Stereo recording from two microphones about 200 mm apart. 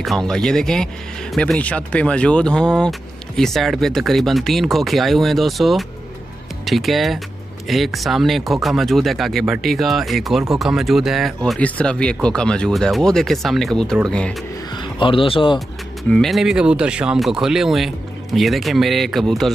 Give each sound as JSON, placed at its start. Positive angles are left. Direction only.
{"t": 0.0, "sound": "speech", "side_deg": 0}
{"t": 14.8, "sound": "speech", "side_deg": 25}
{"t": 16.0, "sound": "speech", "side_deg": 0}